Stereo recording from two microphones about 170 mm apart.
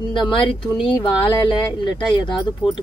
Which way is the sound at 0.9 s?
30° left (ahead or behind).